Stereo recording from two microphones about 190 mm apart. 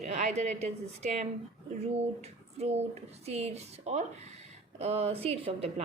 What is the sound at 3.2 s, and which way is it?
A woman's voice, 35° right (ahead or behind).